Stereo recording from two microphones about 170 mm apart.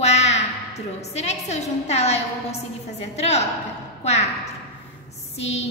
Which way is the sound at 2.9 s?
40° left (ahead or behind).